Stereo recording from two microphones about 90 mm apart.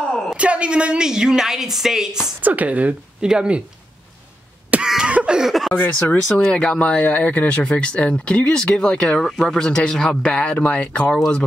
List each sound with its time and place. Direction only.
0.4 s a woman's voice: 15° right (ahead or behind)
2.4 s a woman's voice: 15° right (ahead or behind)
4.8 s a sound: 10° right (ahead or behind)
5.8 s speech: 20° left (ahead or behind)
6.2 s speech: 10° left (ahead or behind)